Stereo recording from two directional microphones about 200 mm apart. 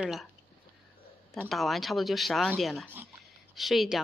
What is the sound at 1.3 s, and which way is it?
Speech, centre (ahead or behind).